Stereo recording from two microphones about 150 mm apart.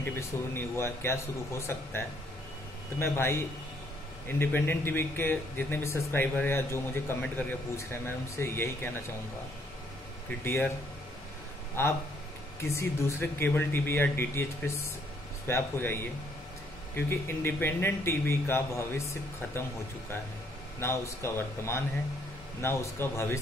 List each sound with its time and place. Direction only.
0.6 s speech: 15° left (ahead or behind)
10.4 s speech: 15° left (ahead or behind)
11.8 s speech: 15° left (ahead or behind)
20.8 s speech: 20° left (ahead or behind)